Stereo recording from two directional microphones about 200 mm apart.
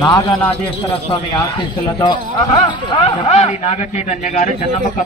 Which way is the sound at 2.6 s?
25° left (ahead or behind).